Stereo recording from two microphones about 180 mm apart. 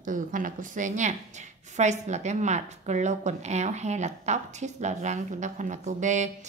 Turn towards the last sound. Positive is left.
turn(degrees=-40)  # may be behind; listen again after turning